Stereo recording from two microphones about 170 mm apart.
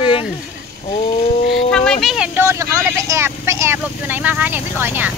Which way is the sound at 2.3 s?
15° right (ahead or behind).